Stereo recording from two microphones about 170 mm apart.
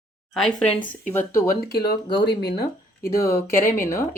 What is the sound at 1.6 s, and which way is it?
Speech, 70° left (ahead or behind).